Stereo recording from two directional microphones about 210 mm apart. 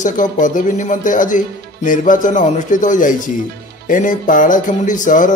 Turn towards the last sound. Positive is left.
turn(degrees=35)  # may be behind; listen again after turning